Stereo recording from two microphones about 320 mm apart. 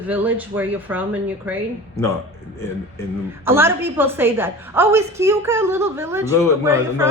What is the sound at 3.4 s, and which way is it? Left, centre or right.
A woman's voice, centre.